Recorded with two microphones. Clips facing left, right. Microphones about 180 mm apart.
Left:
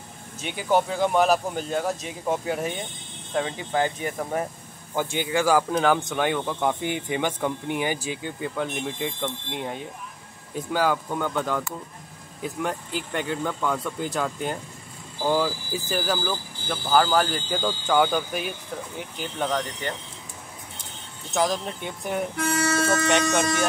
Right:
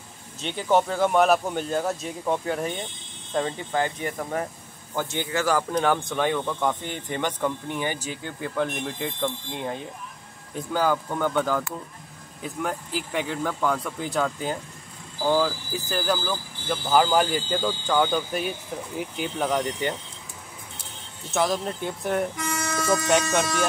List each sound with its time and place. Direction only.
0.4 s speech: 10° left (ahead or behind)
8.4 s speech: centre (ahead or behind)
17.0 s speech: 10° right (ahead or behind)
21.3 s speech: centre (ahead or behind)